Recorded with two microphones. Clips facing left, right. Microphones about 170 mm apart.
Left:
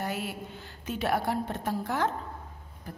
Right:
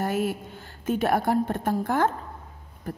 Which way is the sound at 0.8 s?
50° right (ahead or behind).